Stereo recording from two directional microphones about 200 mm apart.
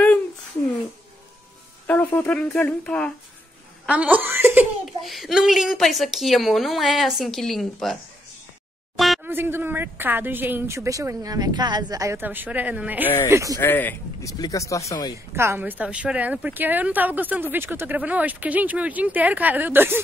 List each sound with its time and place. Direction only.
1.9 s speech: 10° left (ahead or behind)
3.8 s giggle: 5° right (ahead or behind)
5.0 s speech: centre (ahead or behind)
8.9 s a sound: centre (ahead or behind)
9.3 s speech: 10° right (ahead or behind)
13.6 s speech: 10° left (ahead or behind)
15.3 s speech: 10° right (ahead or behind)